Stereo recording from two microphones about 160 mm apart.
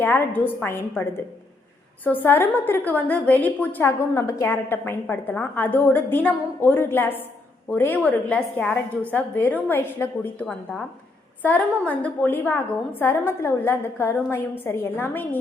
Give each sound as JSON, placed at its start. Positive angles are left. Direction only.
{"t": 0.0, "sound": "a woman's voice", "side_deg": 10}